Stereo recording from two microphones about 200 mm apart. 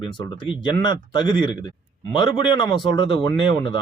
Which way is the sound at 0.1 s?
25° left (ahead or behind).